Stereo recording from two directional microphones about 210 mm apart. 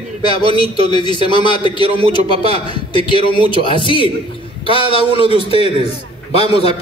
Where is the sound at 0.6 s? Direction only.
20° left (ahead or behind).